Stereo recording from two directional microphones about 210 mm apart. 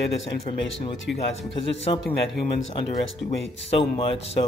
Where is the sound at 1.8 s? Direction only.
55° left (ahead or behind).